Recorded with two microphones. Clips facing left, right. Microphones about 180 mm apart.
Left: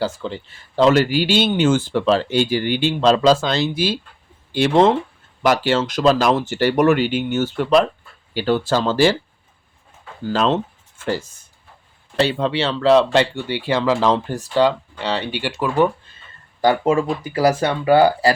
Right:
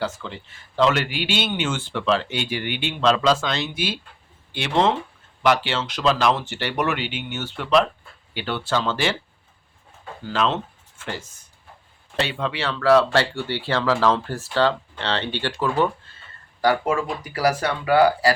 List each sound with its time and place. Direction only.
0.0 s speech: 35° left (ahead or behind)
10.2 s speech: 35° left (ahead or behind)